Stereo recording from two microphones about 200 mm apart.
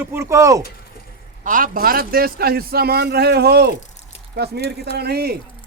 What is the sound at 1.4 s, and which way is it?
Speech, 45° right (ahead or behind).